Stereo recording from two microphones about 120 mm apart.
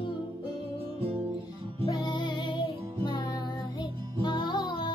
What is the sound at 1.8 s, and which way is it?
Music, 35° left (ahead or behind).